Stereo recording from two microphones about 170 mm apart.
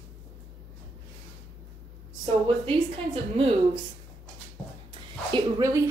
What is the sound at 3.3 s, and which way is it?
Speech, 30° right (ahead or behind).